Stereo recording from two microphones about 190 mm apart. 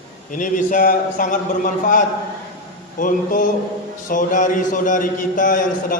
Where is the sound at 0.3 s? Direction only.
45° left (ahead or behind).